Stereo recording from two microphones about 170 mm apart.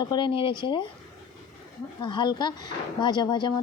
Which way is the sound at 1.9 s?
25° left (ahead or behind).